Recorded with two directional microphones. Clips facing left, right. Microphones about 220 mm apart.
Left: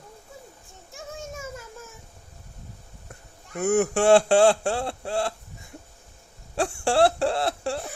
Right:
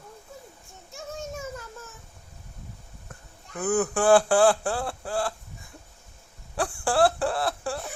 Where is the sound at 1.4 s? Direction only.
10° left (ahead or behind).